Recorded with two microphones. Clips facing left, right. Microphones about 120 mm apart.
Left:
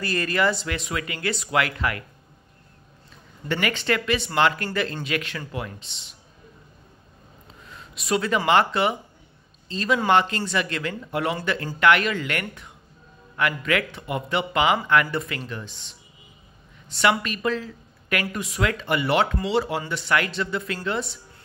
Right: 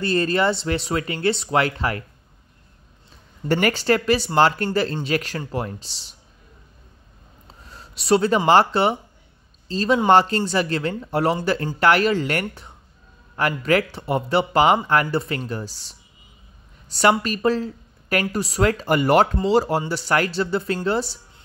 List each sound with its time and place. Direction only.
0.0 s speech: 30° right (ahead or behind)
3.4 s speech: 40° right (ahead or behind)
7.4 s a sound: 35° right (ahead or behind)
8.5 s a woman's voice: 35° right (ahead or behind)